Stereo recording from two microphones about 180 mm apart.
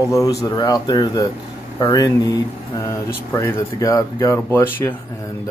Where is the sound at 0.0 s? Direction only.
15° left (ahead or behind).